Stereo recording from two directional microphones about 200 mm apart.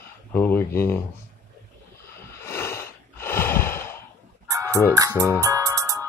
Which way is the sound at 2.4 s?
10° left (ahead or behind).